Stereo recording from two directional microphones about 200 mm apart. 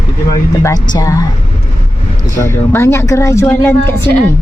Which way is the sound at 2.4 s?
10° left (ahead or behind).